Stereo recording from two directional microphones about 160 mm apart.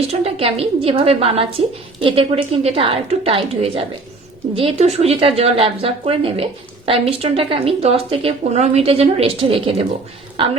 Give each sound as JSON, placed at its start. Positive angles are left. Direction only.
{"t": 0.1, "sound": "a woman's voice", "side_deg": -35}